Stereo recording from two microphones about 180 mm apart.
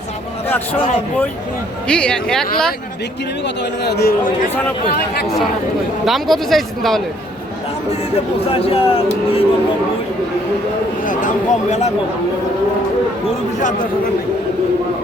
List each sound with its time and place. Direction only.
0.4 s a man's voice: 10° left (ahead or behind)
1.9 s speech: 5° left (ahead or behind)
3.4 s speech: 70° left (ahead or behind)
6.1 s speech: centre (ahead or behind)
8.1 s speech: 30° left (ahead or behind)
11.0 s speech: 45° left (ahead or behind)